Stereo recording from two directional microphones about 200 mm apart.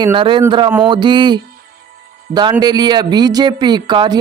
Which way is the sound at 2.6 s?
20° right (ahead or behind).